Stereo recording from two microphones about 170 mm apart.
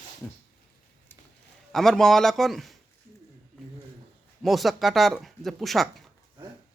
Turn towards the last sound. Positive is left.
turn(degrees=0)  # may be behind; listen again after turning